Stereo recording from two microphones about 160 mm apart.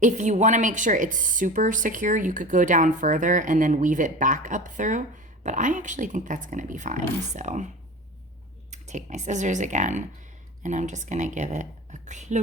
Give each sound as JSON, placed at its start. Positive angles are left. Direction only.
{"t": 0.0, "sound": "speech", "side_deg": -50}
{"t": 8.7, "sound": "speech", "side_deg": -45}